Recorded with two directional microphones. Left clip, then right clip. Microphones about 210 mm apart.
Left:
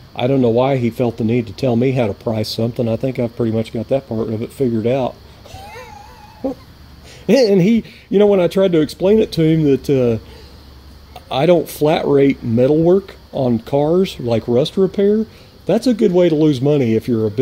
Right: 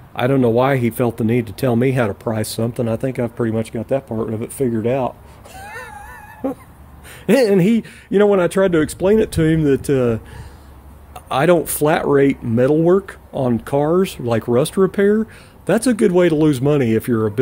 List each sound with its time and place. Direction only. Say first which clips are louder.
0.1 s speech: left 1 dB; 60° right (ahead or behind)
1.4 s speech: left 1 dB; 20° right (ahead or behind)
1.7 s speech: left 1 dB; 55° right (ahead or behind)
2.0 s speech: left 1 dB; 15° right (ahead or behind)
7.2 s speech: left 1 dB; 15° right (ahead or behind)